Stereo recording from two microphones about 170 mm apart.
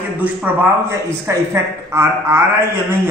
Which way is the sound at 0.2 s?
10° right (ahead or behind).